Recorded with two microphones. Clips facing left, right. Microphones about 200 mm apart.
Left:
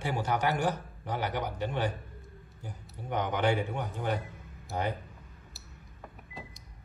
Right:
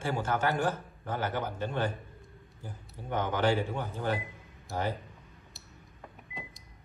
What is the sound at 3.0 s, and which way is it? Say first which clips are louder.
Speech: even; 15° left (ahead or behind).